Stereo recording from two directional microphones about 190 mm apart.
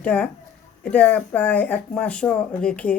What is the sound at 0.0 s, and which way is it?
Speech, 5° left (ahead or behind).